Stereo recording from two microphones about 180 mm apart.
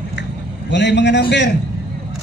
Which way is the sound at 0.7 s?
75° left (ahead or behind).